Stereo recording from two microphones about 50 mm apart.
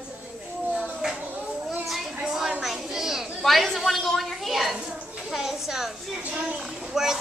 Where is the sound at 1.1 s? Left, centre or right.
Right.